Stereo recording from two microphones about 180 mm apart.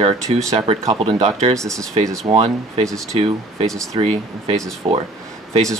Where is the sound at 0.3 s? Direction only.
35° right (ahead or behind); by 3.2 s 20° right (ahead or behind).